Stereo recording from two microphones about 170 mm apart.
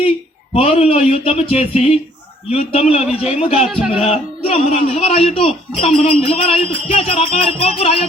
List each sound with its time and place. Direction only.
0.5 s speech: 35° left (ahead or behind)